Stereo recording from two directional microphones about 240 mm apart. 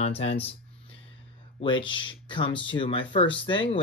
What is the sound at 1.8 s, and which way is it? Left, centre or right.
Speech, centre.